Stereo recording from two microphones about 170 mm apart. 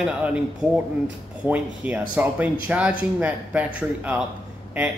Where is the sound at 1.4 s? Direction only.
10° right (ahead or behind).